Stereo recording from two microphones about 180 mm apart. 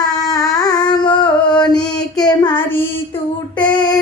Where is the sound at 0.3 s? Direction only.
20° left (ahead or behind).